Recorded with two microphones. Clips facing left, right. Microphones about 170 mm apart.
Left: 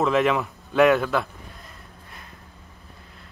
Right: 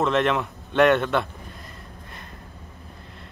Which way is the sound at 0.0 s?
Centre (ahead or behind).